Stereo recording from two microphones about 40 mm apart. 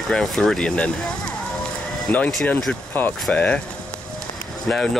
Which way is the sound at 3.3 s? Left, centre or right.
Left.